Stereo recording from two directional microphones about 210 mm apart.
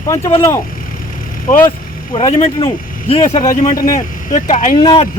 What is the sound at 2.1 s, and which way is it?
Speech, 25° left (ahead or behind).